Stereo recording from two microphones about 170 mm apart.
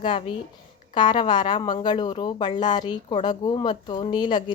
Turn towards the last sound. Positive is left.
turn(degrees=25)  # may be behind; listen again after turning